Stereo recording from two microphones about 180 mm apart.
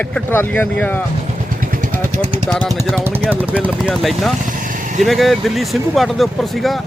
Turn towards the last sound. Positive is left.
turn(degrees=0)  # may be behind; listen again after turning